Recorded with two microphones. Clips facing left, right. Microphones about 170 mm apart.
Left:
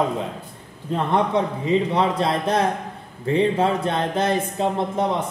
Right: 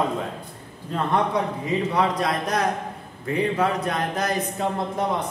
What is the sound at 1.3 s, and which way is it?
Speech, 25° left (ahead or behind).